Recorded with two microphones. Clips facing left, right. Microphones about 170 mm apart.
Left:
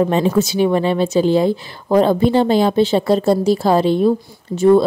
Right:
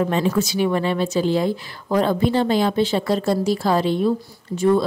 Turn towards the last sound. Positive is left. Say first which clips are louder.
# left 6 dB
turn(degrees=25)  # may be behind; listen again after turning